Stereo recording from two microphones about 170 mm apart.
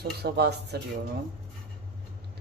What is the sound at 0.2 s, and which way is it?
Speech, 70° right (ahead or behind).